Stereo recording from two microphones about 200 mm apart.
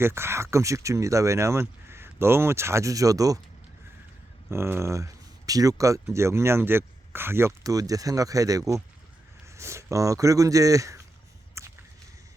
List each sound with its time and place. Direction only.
0.0 s speech: 10° right (ahead or behind)
4.4 s speech: 10° right (ahead or behind)
11.6 s a sound: 15° right (ahead or behind)